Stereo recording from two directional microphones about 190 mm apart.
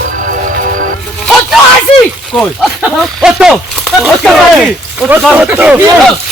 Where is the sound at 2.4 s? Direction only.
Centre (ahead or behind).